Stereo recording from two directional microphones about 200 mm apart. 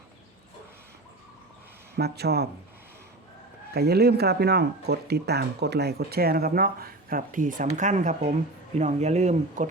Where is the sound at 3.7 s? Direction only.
55° right (ahead or behind).